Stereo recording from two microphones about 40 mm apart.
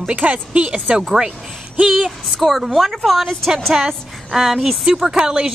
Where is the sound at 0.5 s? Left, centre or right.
Right.